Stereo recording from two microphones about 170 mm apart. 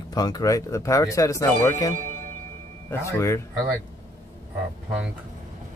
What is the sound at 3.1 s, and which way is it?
Speech, 15° left (ahead or behind).